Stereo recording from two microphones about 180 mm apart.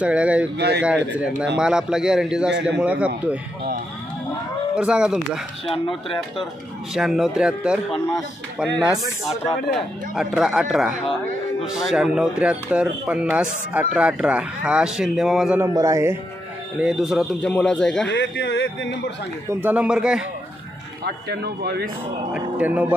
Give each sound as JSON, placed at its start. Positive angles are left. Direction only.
{"t": 0.0, "sound": "a man's voice", "side_deg": -5}
{"t": 0.6, "sound": "a man's voice", "side_deg": -70}
{"t": 0.8, "sound": "a man's voice", "side_deg": -5}
{"t": 4.7, "sound": "speech", "side_deg": -5}
{"t": 5.9, "sound": "speech", "side_deg": 30}
{"t": 6.9, "sound": "speech", "side_deg": 0}
{"t": 15.7, "sound": "a man's voice", "side_deg": -15}
{"t": 16.8, "sound": "speech", "side_deg": 0}
{"t": 18.0, "sound": "a man's voice", "side_deg": 85}
{"t": 19.5, "sound": "a man's voice", "side_deg": -10}
{"t": 21.0, "sound": "speech", "side_deg": -65}
{"t": 22.3, "sound": "a man's voice", "side_deg": -10}